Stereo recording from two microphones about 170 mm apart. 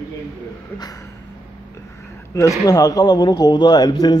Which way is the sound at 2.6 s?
20° left (ahead or behind).